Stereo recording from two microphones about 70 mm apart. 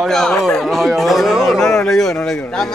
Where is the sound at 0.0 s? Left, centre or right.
Centre.